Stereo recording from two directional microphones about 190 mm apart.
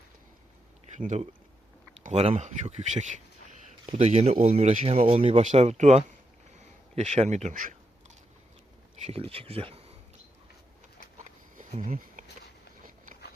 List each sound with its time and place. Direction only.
0.9 s speech: 40° right (ahead or behind)
9.0 s speech: 30° right (ahead or behind)
11.2 s a sound: 45° right (ahead or behind)